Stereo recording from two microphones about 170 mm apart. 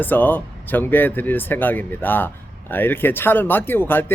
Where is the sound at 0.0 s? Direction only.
10° left (ahead or behind).